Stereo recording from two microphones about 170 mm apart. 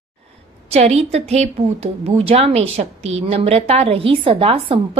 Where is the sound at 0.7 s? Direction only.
40° right (ahead or behind).